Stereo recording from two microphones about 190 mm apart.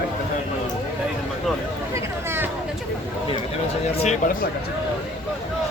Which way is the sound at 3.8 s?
35° left (ahead or behind).